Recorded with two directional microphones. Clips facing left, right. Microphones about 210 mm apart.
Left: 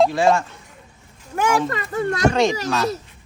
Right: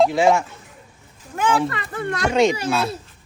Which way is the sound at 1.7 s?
40° left (ahead or behind).